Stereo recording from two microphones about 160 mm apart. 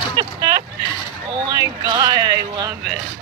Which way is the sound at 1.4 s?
25° right (ahead or behind).